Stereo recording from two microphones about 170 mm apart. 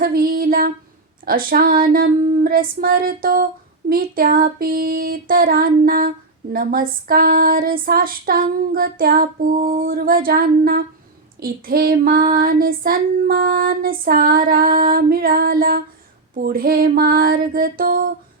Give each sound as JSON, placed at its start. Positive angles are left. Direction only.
{"t": 0.0, "sound": "female singing", "side_deg": -60}
{"t": 9.6, "sound": "a sound", "side_deg": -30}
{"t": 9.8, "sound": "female singing", "side_deg": -60}